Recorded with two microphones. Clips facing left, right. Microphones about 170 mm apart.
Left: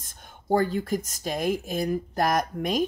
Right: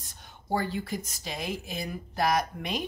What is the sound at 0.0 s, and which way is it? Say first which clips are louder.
Speech: left 2 dB; 45° left (ahead or behind).